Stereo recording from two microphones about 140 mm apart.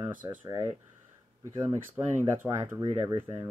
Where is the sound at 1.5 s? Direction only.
20° right (ahead or behind).